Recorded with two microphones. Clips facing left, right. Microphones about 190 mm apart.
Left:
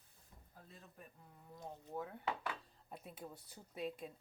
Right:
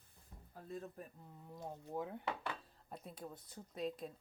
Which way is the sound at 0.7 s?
45° right (ahead or behind).